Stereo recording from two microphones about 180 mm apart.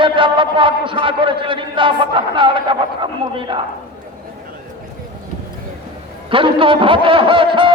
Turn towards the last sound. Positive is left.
turn(degrees=-30)  # may be behind; listen again after turning